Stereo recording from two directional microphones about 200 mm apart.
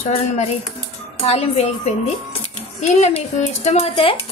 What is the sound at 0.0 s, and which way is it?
A woman's voice, 30° left (ahead or behind).